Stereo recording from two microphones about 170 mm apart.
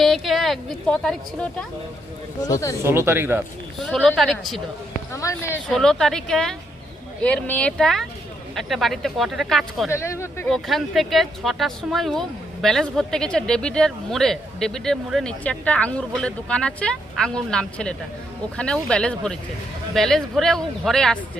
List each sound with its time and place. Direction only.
0.0 s a woman's voice: centre (ahead or behind)
2.4 s speech: 20° left (ahead or behind)
2.8 s speech: 15° right (ahead or behind)
3.8 s speech: 5° left (ahead or behind)
5.1 s speech: 15° left (ahead or behind)
5.6 s speech: 5° left (ahead or behind)
9.9 s speech: 15° left (ahead or behind)
10.5 s speech: centre (ahead or behind)